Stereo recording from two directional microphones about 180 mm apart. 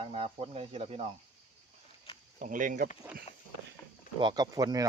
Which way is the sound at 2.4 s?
45° right (ahead or behind).